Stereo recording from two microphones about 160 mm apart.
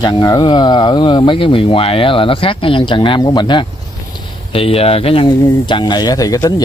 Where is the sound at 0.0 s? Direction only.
25° left (ahead or behind).